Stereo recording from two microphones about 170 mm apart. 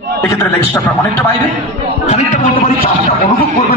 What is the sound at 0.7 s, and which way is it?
Speech, 10° left (ahead or behind).